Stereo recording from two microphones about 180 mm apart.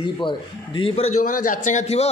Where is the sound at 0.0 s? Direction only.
25° left (ahead or behind).